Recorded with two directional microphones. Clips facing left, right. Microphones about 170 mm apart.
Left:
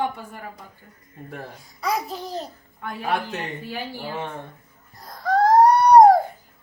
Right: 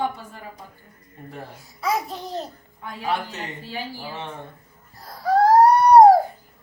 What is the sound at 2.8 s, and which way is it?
Speech, 55° left (ahead or behind).